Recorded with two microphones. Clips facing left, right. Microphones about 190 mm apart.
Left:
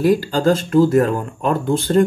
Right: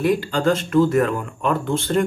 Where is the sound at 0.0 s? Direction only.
35° left (ahead or behind).